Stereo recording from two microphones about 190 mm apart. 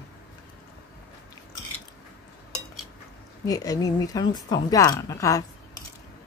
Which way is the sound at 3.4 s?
20° left (ahead or behind).